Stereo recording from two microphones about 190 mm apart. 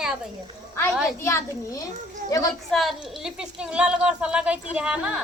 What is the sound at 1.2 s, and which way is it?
Speech, 15° left (ahead or behind).